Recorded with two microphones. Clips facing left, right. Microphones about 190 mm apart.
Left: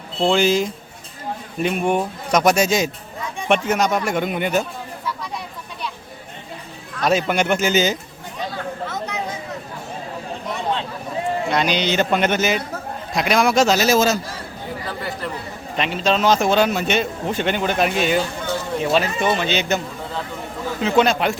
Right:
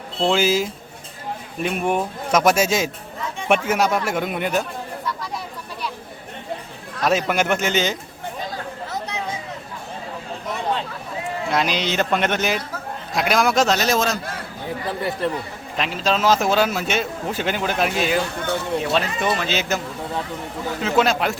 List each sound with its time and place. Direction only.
0.2 s a man's voice: 5° right (ahead or behind)
7.0 s a man's voice: centre (ahead or behind)
8.5 s chatter: 35° right (ahead or behind)
11.4 s a man's voice: centre (ahead or behind)
14.8 s speech: 25° right (ahead or behind)
15.7 s a man's voice: centre (ahead or behind)
20.8 s a man's voice: centre (ahead or behind)